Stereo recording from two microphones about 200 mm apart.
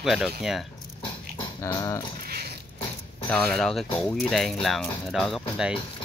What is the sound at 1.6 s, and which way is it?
Dog, 15° left (ahead or behind).